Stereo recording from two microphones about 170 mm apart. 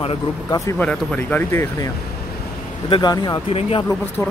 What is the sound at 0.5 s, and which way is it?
Speech, 20° left (ahead or behind).